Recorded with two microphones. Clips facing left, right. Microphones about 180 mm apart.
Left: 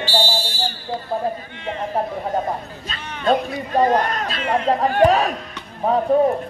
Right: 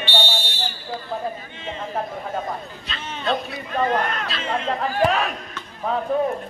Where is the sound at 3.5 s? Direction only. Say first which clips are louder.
Left 5 dB; 35° left (ahead or behind).